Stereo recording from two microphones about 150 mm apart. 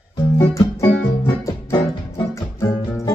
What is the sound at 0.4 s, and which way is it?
Music, 20° left (ahead or behind).